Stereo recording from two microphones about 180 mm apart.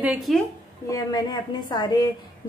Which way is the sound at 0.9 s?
20° left (ahead or behind).